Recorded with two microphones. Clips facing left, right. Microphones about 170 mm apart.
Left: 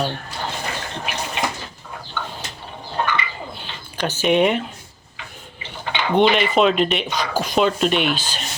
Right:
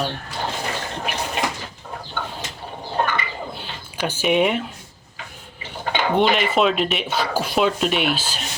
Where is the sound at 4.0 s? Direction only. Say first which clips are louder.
Left 2 dB; 10° right (ahead or behind).